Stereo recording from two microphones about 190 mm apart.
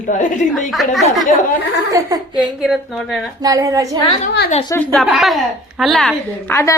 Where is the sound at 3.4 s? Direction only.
20° right (ahead or behind).